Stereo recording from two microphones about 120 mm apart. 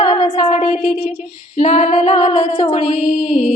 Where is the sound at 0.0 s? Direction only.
55° left (ahead or behind).